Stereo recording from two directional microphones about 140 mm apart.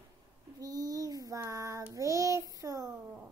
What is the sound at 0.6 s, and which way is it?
Child singing, 25° right (ahead or behind).